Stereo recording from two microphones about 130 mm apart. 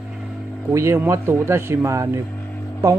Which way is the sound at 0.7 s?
20° right (ahead or behind).